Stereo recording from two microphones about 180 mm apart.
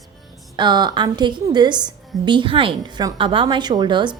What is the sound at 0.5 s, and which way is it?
A woman's voice, 25° right (ahead or behind).